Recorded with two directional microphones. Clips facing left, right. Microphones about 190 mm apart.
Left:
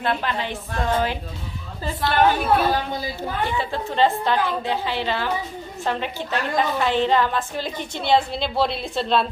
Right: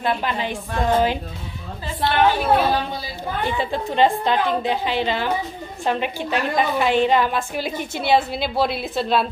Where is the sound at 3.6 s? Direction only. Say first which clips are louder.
Right 2 dB; 15° right (ahead or behind).